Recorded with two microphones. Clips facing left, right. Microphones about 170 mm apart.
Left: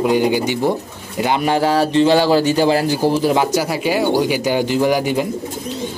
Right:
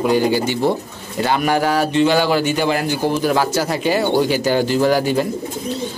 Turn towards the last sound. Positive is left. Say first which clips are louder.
# even
turn(degrees=15)  # may be behind; listen again after turning